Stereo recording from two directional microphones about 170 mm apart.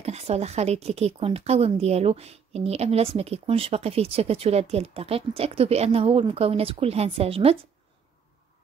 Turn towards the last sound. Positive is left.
turn(degrees=-35)  # may be behind; listen again after turning